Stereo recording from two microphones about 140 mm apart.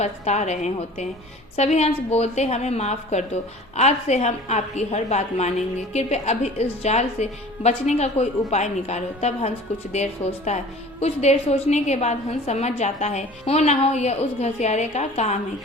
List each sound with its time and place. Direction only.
0.0 s a woman's voice: 55° left (ahead or behind)